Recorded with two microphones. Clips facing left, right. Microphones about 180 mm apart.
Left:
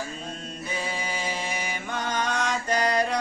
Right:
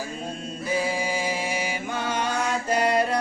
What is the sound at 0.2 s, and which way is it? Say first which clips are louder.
Chant: right 4 dB; 10° right (ahead or behind).